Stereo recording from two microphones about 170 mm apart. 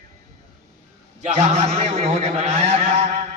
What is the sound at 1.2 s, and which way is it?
A man's voice, 40° right (ahead or behind).